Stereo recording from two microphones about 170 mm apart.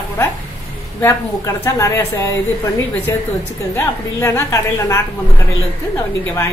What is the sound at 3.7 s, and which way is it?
A woman's voice, 15° left (ahead or behind).